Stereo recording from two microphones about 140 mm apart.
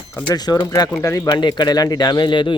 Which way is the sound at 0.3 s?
30° left (ahead or behind).